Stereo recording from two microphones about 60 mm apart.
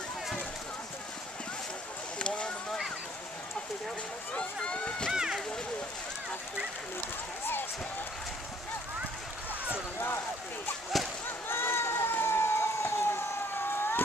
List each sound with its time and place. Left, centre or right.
2.1 s clip-clop: centre
4.3 s run: centre
5.1 s run: centre
9.9 s a sound: left
11.2 s run: left